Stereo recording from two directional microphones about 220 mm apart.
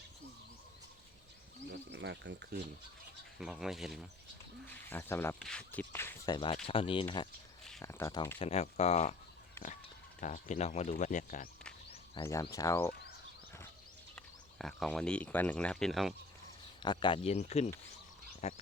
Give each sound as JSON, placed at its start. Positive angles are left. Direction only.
{"t": 1.9, "sound": "speech", "side_deg": -55}
{"t": 3.3, "sound": "speech", "side_deg": 0}
{"t": 8.4, "sound": "speech", "side_deg": 30}
{"t": 10.2, "sound": "speech", "side_deg": 35}
{"t": 12.2, "sound": "speech", "side_deg": 15}
{"t": 14.2, "sound": "speech", "side_deg": 0}
{"t": 16.8, "sound": "speech", "side_deg": 20}
{"t": 18.3, "sound": "frog", "side_deg": 30}